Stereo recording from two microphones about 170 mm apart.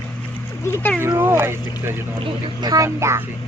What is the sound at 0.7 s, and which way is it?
Speech, 10° left (ahead or behind).